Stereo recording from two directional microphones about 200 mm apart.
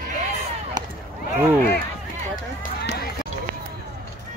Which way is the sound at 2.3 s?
50° left (ahead or behind).